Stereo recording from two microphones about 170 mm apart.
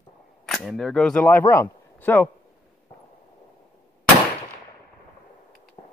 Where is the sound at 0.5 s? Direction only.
Centre (ahead or behind).